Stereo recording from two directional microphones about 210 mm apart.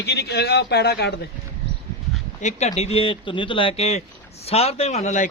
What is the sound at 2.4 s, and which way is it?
A man's voice, 35° left (ahead or behind).